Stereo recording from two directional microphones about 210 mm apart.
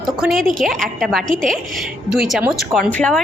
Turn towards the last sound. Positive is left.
turn(degrees=5)  # may be behind; listen again after turning